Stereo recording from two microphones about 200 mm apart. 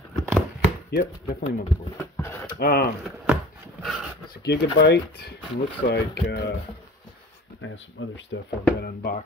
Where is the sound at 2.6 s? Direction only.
50° left (ahead or behind).